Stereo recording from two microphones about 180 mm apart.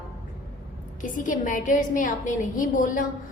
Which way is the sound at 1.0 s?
45° left (ahead or behind).